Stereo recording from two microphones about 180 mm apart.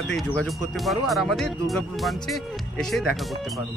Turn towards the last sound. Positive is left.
turn(degrees=5)  # may be behind; listen again after turning